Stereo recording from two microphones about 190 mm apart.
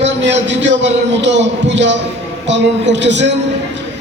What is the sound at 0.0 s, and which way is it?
A man's voice, 70° right (ahead or behind).